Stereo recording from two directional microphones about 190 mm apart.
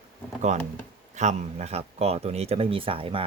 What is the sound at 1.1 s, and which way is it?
Speech, 40° right (ahead or behind).